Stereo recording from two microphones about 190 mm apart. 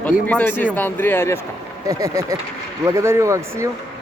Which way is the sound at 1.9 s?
20° right (ahead or behind).